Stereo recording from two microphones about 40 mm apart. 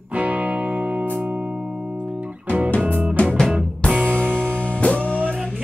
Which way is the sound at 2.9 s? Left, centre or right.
Right.